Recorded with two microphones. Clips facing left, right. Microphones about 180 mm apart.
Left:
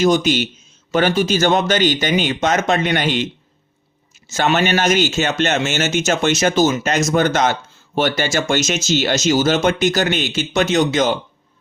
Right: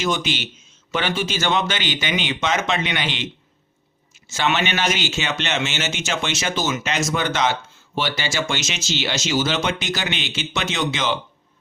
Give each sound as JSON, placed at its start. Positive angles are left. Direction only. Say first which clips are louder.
{"t": 0.0, "sound": "a man's voice", "louder": "left 9 dB", "side_deg": 40}
{"t": 4.3, "sound": "a man's voice", "louder": "left 5 dB", "side_deg": 45}